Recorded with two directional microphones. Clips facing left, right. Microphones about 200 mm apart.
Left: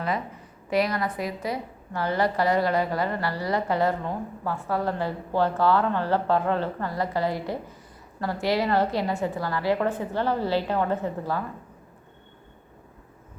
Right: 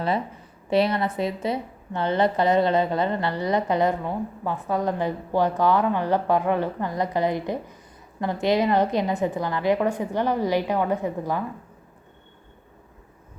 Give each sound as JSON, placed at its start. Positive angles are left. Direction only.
{"t": 0.7, "sound": "a woman's voice", "side_deg": -25}